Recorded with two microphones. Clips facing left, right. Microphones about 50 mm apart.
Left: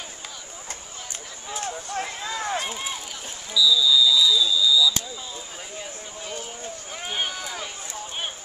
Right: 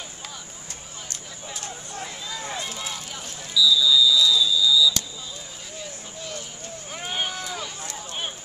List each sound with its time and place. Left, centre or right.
2.0 s a sound: left
2.6 s run: left
3.5 s basketball bounce: centre
7.0 s run: centre
7.4 s run: centre